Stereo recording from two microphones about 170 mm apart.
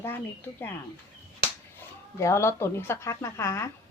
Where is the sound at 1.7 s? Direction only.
15° left (ahead or behind).